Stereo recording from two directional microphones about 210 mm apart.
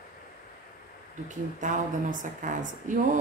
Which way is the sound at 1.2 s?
35° right (ahead or behind).